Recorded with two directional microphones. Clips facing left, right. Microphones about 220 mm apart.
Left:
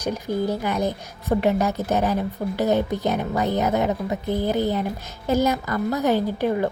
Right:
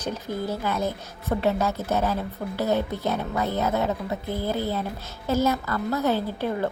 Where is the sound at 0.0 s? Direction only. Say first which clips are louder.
Left 5 dB; 15° left (ahead or behind).